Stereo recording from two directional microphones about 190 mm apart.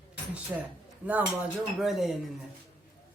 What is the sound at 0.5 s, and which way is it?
Speech, 10° right (ahead or behind).